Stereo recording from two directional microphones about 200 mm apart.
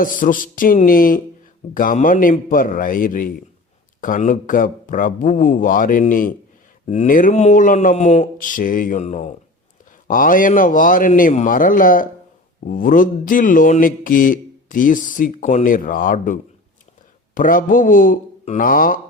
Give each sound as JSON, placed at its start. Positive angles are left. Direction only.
{"t": 0.0, "sound": "speech", "side_deg": 45}